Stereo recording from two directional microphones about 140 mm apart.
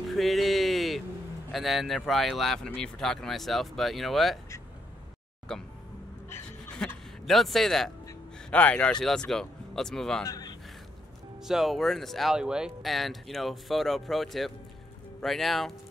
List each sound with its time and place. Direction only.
0.1 s a sound: centre (ahead or behind)
1.5 s speech: centre (ahead or behind)
5.5 s speech: 5° left (ahead or behind)
6.8 s speech: 5° left (ahead or behind)
10.2 s a man's voice: 25° left (ahead or behind)
11.4 s speech: centre (ahead or behind)